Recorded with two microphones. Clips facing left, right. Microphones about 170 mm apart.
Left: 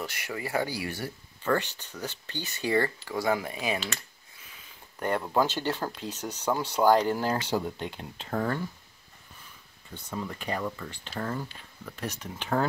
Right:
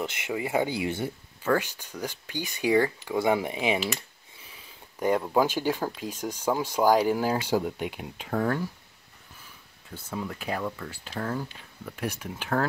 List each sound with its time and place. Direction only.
0.0 s speech: 20° right (ahead or behind)
1.4 s speech: 10° right (ahead or behind)
3.2 s speech: 20° right (ahead or behind); by 8.6 s 5° right (ahead or behind)
9.8 s speech: 5° right (ahead or behind)